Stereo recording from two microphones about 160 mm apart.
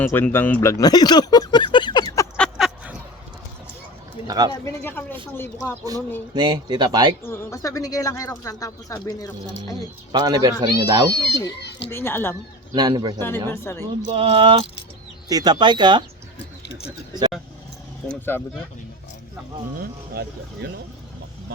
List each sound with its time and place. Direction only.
0.0 s speech: 15° left (ahead or behind)
2.6 s a sound: centre (ahead or behind)
4.3 s speech: 25° right (ahead or behind)
4.6 s speech: 15° left (ahead or behind)
6.3 s speech: 25° right (ahead or behind)
7.2 s speech: 15° left (ahead or behind)
10.1 s speech: 25° right (ahead or behind)
11.1 s speech: 90° left
11.9 s speech: 15° left (ahead or behind)
12.7 s speech: 25° right (ahead or behind)
13.1 s speech: 15° left (ahead or behind)
14.1 s speech: 35° right (ahead or behind)
18.1 s speech: 10° left (ahead or behind)
19.8 s speech: 85° right